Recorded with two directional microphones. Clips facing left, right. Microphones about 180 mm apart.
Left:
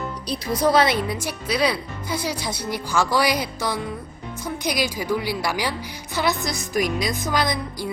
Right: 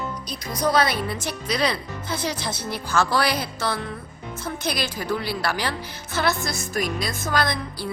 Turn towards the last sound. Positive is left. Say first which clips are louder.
# left 1 dB
turn(degrees=15)  # may be behind; listen again after turning